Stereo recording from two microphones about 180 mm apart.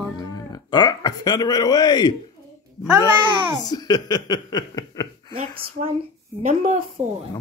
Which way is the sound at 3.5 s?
20° left (ahead or behind).